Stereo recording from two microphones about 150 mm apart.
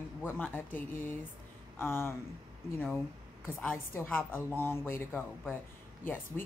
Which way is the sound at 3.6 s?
10° left (ahead or behind).